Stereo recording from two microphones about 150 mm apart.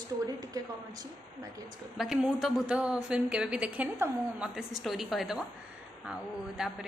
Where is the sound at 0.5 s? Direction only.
25° right (ahead or behind).